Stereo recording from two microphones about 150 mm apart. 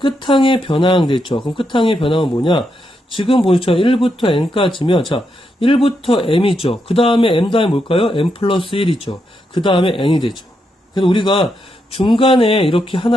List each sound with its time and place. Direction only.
0.0 s speech: 35° left (ahead or behind)